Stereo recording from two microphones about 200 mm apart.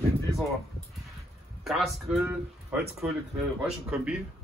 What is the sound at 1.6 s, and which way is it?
Speech, centre (ahead or behind).